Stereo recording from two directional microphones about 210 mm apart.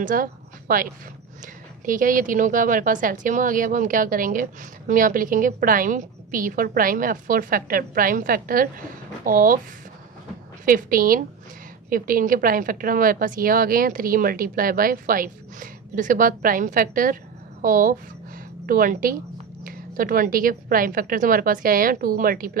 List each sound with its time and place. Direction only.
0.0 s speech: 40° right (ahead or behind)
10.6 s speech: 40° right (ahead or behind)